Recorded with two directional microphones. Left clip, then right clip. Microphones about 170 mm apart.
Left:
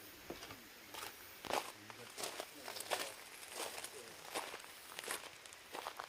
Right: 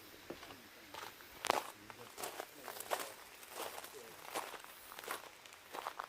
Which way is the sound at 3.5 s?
5° right (ahead or behind).